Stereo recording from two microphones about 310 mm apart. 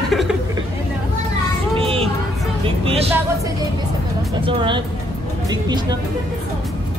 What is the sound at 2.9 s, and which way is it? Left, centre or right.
Speech, centre.